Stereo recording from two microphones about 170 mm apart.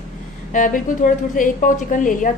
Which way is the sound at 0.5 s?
50° left (ahead or behind).